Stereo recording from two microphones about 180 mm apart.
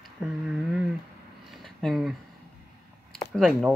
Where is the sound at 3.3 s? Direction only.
5° right (ahead or behind).